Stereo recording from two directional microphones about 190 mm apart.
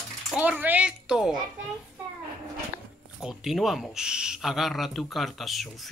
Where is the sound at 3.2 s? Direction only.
Centre (ahead or behind).